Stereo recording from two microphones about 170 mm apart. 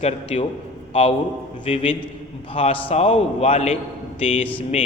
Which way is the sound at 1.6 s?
35° left (ahead or behind).